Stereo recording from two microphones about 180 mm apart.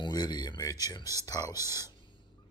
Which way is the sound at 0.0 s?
25° left (ahead or behind).